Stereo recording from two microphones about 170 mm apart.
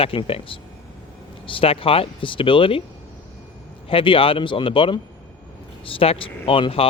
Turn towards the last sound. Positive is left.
turn(degrees=30)  # may be behind; listen again after turning